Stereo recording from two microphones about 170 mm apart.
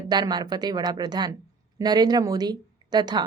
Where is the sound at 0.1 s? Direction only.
25° right (ahead or behind).